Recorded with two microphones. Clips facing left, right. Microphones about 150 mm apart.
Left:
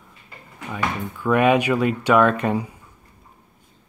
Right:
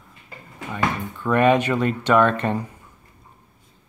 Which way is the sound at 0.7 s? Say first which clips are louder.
Right 1 dB; 10° left (ahead or behind).